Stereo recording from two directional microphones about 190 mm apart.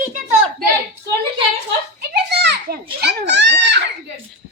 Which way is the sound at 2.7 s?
55° right (ahead or behind).